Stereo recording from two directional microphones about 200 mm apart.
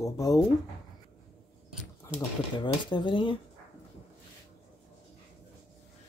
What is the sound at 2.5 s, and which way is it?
Speech, 25° left (ahead or behind).